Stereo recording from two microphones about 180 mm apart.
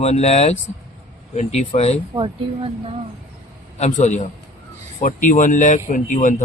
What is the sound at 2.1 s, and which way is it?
Speech, 30° right (ahead or behind).